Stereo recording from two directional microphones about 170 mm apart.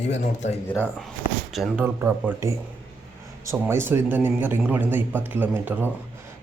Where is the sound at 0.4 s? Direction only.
40° left (ahead or behind).